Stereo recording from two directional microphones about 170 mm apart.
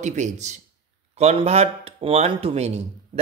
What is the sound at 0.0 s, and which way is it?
Speech, 45° right (ahead or behind).